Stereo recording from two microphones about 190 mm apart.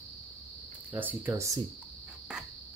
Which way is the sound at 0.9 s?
10° right (ahead or behind).